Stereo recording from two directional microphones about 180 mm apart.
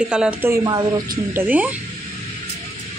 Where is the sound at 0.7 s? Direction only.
25° right (ahead or behind).